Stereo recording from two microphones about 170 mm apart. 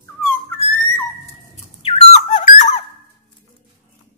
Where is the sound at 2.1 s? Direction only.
45° left (ahead or behind).